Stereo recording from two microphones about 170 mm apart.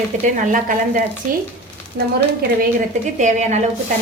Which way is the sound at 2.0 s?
75° right (ahead or behind).